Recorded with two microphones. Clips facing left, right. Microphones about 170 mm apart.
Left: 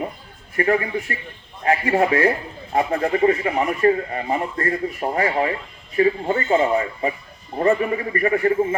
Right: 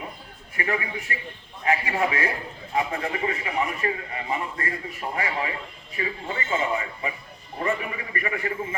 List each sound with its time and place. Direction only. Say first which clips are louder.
0.5 s speech: left 9 dB; 40° left (ahead or behind)